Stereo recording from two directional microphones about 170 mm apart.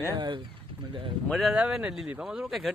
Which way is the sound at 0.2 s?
25° right (ahead or behind).